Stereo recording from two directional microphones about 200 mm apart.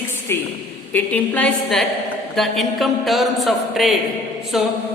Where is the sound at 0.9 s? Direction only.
5° left (ahead or behind).